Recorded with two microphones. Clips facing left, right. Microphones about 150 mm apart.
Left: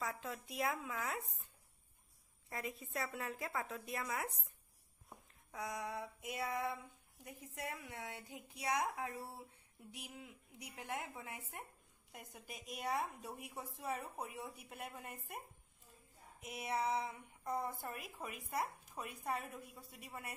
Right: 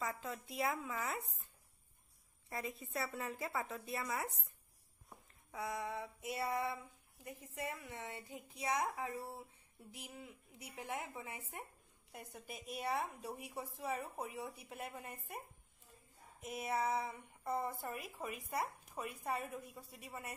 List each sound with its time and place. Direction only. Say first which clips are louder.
0.0 s a woman's voice: right 1 dB; centre (ahead or behind)
2.5 s a woman's voice: right 1 dB; centre (ahead or behind)
5.3 s a sound: right 2 dB; centre (ahead or behind)
7.2 s a woman's voice: right 2 dB; centre (ahead or behind)
16.4 s a woman's voice: right 1 dB; centre (ahead or behind)